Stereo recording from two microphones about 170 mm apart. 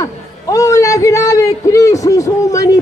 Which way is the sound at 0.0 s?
20° left (ahead or behind).